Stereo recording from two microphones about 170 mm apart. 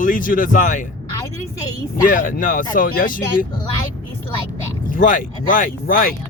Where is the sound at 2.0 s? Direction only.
50° left (ahead or behind).